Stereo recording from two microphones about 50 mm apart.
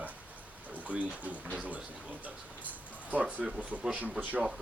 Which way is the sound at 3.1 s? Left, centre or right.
Right.